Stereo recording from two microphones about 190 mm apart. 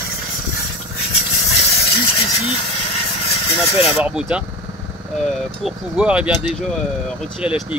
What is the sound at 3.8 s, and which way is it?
Speech, 5° right (ahead or behind).